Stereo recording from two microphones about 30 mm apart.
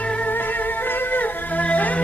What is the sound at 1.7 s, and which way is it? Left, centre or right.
Music, left.